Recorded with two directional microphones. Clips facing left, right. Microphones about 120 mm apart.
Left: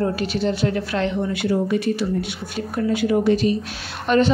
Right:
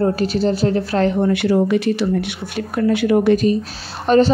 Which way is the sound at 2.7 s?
70° right (ahead or behind).